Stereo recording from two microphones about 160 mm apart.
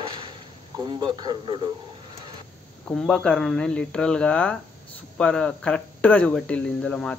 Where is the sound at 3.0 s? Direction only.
5° left (ahead or behind).